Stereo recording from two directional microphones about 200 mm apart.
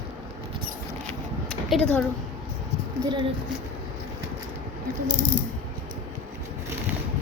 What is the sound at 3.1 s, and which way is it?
Speech, 25° right (ahead or behind).